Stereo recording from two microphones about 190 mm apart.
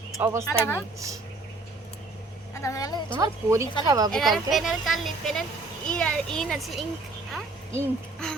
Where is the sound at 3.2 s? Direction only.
15° right (ahead or behind).